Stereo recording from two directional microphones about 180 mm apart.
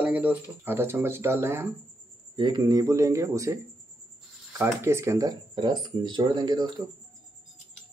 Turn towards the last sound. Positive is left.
turn(degrees=-25)  # may be behind; listen again after turning